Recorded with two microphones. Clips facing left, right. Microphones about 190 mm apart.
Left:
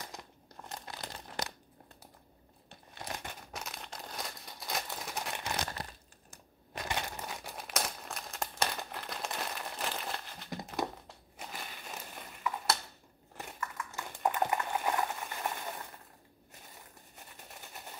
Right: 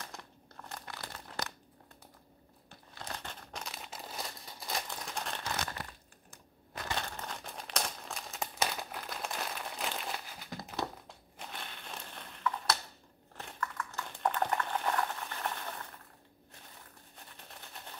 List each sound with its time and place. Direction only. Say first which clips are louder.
0.0 s crumpling: left 1 dB; 15° left (ahead or behind)
2.7 s crumpling: left 2 dB; 15° left (ahead or behind)
6.8 s crumpling: left 1 dB; 15° left (ahead or behind); by 10.5 s 5° right (ahead or behind)
11.1 s crushing: left 1 dB; 5° left (ahead or behind)
13.4 s a sound: right 1 dB; 10° left (ahead or behind)
17.1 s a sound: left 1 dB; 10° left (ahead or behind)